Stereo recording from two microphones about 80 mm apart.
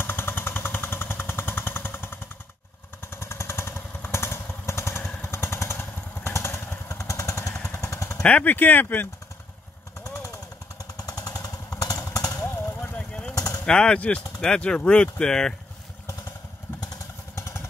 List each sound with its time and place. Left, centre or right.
0.0 s jackhammer: left
3.1 s motorcycle: left
8.2 s speech: centre
10.0 s jackhammer: left
11.7 s chainsaw: left
12.1 s a sound: left
12.4 s vehicle: left
12.9 s vehicle: centre
13.3 s a sound: left
13.7 s speech: centre
17.4 s motorcycle: left